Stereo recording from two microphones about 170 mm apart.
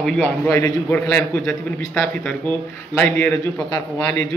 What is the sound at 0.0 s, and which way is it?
A man's voice, 5° left (ahead or behind).